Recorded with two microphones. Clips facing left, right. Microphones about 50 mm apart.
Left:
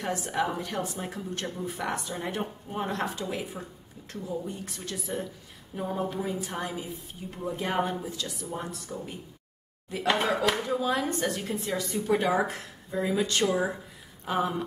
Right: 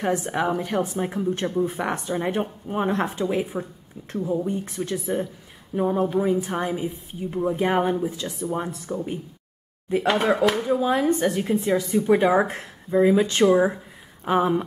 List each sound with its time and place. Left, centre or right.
0.0 s speech: right
10.0 s speech: centre
10.6 s speech: right
12.1 s speech: right